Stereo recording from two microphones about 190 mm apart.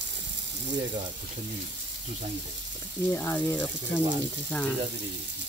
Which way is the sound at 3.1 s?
10° left (ahead or behind).